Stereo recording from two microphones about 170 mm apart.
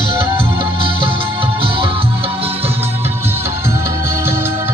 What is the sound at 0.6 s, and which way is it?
Music, 30° right (ahead or behind).